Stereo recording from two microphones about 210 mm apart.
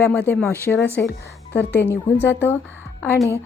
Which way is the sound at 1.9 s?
10° left (ahead or behind).